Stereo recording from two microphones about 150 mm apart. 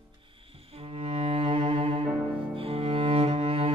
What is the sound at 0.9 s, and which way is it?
Cello, 45° right (ahead or behind).